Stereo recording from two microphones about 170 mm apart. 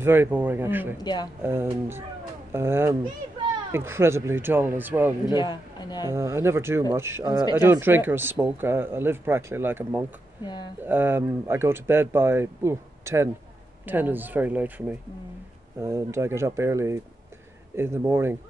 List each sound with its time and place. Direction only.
0.0 s speech: 10° right (ahead or behind)
1.0 s speech: 25° left (ahead or behind)
1.4 s speech: 15° right (ahead or behind)
5.3 s speech: 25° left (ahead or behind)
6.1 s speech: 15° right (ahead or behind)
10.4 s speech: 25° left (ahead or behind)
10.8 s speech: 10° right (ahead or behind)